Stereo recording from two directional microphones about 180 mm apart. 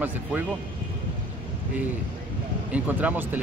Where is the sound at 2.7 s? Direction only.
10° right (ahead or behind).